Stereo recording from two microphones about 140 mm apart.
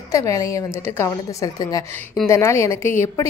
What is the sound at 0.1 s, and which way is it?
A woman's voice, 25° left (ahead or behind).